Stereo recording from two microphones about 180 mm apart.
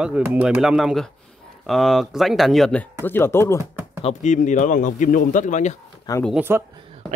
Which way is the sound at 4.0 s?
35° left (ahead or behind).